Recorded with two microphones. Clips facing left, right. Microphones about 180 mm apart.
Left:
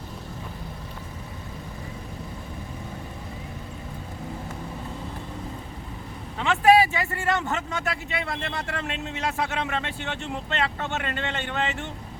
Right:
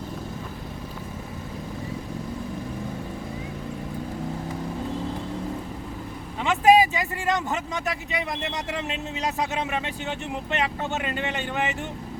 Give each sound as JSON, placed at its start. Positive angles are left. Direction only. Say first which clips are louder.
{"t": 6.4, "sound": "speech", "louder": "right 1 dB", "side_deg": -20}